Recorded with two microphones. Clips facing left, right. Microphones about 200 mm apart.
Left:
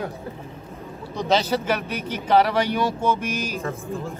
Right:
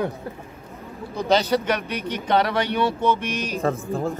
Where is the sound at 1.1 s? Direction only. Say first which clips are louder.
Right 2 dB; centre (ahead or behind).